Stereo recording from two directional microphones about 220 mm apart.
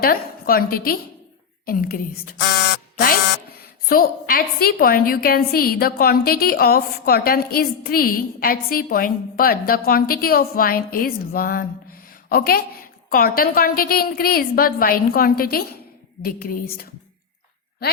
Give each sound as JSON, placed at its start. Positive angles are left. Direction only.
{"t": 0.0, "sound": "a woman's voice", "side_deg": 40}
{"t": 3.8, "sound": "a woman's voice", "side_deg": 40}